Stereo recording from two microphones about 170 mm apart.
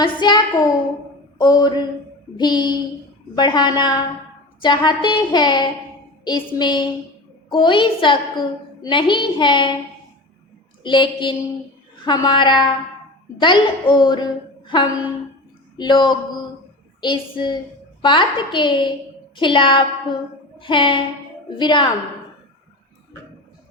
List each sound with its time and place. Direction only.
0.0 s a woman's voice: 25° left (ahead or behind)
10.8 s a woman's voice: 30° left (ahead or behind)